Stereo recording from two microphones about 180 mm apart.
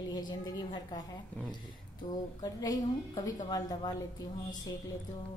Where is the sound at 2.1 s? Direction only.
20° left (ahead or behind).